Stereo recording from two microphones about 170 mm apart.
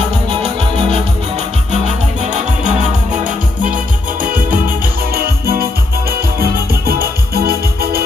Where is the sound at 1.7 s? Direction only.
45° right (ahead or behind).